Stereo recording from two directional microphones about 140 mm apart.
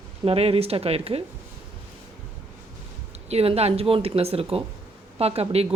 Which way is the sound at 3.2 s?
45° right (ahead or behind).